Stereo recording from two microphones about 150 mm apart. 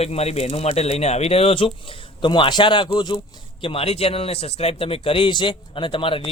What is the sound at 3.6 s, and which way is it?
A man's voice, 40° left (ahead or behind).